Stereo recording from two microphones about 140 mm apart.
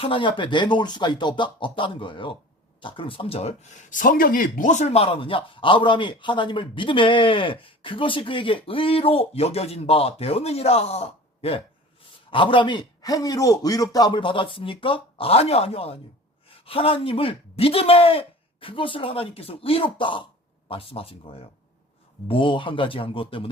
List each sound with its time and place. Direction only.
0.0 s speech: 40° left (ahead or behind)